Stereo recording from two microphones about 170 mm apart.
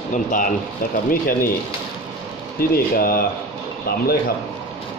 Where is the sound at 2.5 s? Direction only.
60° left (ahead or behind).